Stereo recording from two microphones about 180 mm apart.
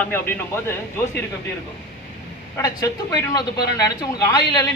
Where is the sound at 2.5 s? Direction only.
20° left (ahead or behind).